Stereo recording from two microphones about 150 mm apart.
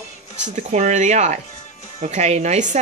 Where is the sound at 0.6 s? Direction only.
50° right (ahead or behind).